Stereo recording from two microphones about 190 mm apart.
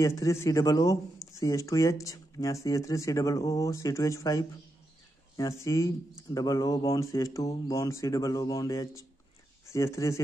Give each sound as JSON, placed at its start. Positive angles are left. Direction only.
{"t": 0.0, "sound": "speech", "side_deg": 15}